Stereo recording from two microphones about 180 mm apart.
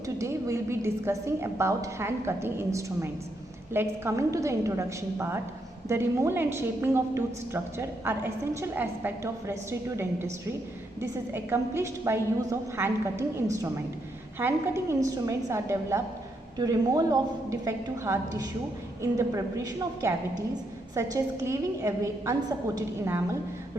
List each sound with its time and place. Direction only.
0.2 s a woman's voice: 15° right (ahead or behind)
11.3 s a woman's voice: 15° right (ahead or behind)